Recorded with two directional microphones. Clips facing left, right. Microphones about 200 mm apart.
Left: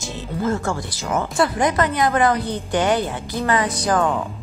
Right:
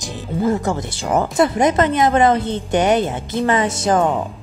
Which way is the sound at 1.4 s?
20° right (ahead or behind).